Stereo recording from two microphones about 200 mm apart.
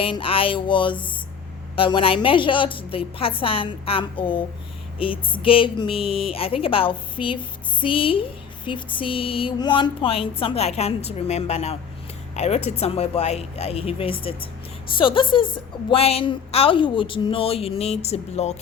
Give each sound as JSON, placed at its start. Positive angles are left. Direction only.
{"t": 0.0, "sound": "a woman's voice", "side_deg": 25}